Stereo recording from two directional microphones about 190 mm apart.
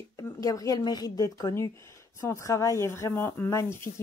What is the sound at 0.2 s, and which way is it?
A woman's voice, 20° left (ahead or behind).